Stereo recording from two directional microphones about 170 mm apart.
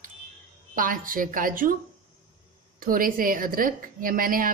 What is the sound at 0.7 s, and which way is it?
A woman's voice, 55° right (ahead or behind).